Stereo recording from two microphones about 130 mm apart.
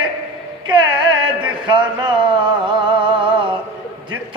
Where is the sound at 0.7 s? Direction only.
35° right (ahead or behind).